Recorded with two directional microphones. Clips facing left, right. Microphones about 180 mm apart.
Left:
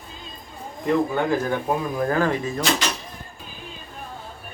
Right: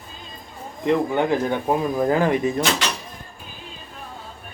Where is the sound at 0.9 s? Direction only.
20° right (ahead or behind).